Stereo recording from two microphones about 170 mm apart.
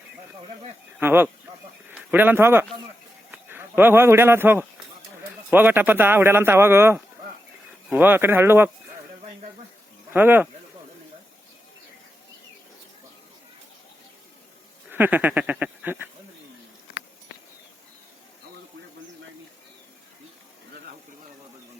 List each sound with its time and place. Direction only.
0.9 s speech: 10° right (ahead or behind)
10.1 s speech: 10° right (ahead or behind)
14.8 s a sound: 10° right (ahead or behind)